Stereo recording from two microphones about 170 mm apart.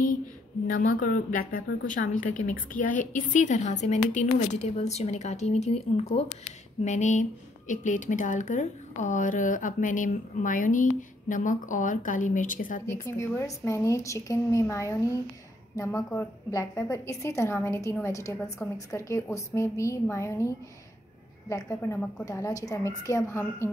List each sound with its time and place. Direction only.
0.7 s speech: 50° left (ahead or behind)
13.0 s a woman's voice: 15° left (ahead or behind)